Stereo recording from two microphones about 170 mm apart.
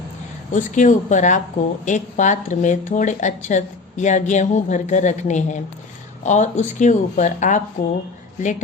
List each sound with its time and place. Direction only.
0.5 s speech: 45° left (ahead or behind)